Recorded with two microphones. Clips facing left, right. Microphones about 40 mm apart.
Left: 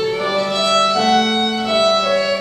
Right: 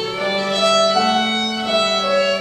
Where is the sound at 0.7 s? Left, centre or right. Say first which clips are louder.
Even; left.